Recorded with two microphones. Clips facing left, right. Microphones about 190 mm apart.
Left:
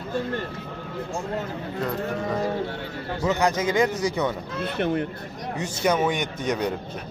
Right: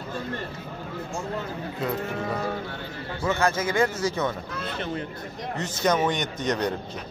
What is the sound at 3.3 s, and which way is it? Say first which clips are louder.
A man's voice: left 2 dB; 15° left (ahead or behind).